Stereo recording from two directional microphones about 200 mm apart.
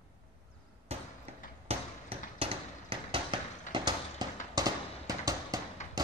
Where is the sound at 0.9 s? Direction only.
30° right (ahead or behind).